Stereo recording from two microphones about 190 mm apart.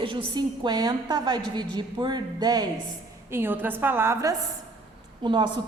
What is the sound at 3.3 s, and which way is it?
A woman's voice, 10° right (ahead or behind).